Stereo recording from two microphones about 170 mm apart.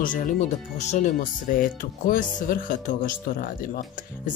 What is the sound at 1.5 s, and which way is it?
Speech, 55° left (ahead or behind).